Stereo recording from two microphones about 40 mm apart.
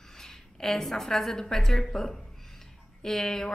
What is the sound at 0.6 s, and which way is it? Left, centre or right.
A woman's voice, centre.